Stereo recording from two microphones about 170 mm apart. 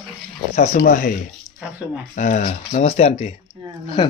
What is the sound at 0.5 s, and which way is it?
Speech, 45° left (ahead or behind).